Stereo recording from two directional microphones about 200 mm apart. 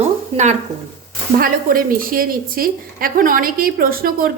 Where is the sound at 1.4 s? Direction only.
45° right (ahead or behind).